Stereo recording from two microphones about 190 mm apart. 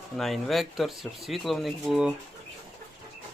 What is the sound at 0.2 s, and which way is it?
Speech, centre (ahead or behind).